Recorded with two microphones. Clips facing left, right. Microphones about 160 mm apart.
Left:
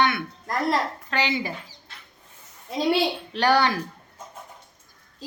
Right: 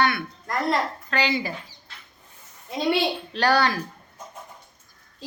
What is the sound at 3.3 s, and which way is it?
Speech, 20° left (ahead or behind).